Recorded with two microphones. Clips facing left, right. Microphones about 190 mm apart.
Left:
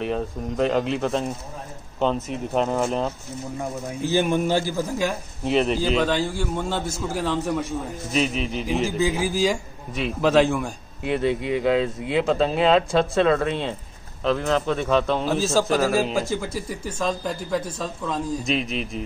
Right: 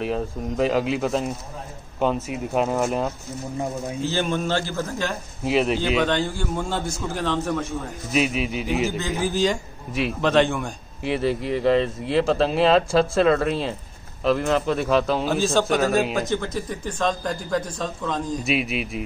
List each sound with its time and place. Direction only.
0.0 s a man's voice: 5° right (ahead or behind)
4.0 s a man's voice: 15° left (ahead or behind)
5.4 s a man's voice: 5° right (ahead or behind)
8.1 s a man's voice: 5° right (ahead or behind)
8.9 s a man's voice: 10° left (ahead or behind)
18.4 s speech: 10° right (ahead or behind)